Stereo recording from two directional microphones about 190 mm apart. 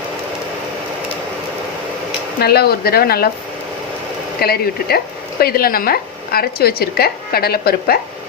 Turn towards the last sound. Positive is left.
turn(degrees=55)  # may be behind; listen again after turning